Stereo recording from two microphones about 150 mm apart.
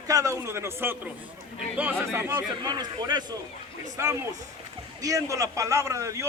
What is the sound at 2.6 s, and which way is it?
A man's voice, 30° right (ahead or behind).